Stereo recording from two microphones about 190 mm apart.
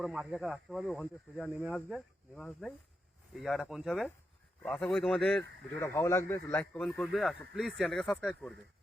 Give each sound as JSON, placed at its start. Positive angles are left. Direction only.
{"t": 0.0, "sound": "a man's voice", "side_deg": 0}